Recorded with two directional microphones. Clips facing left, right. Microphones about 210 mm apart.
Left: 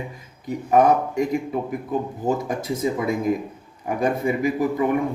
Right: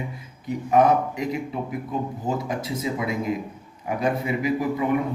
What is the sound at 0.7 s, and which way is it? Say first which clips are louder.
Speech: left 2 dB; 50° left (ahead or behind).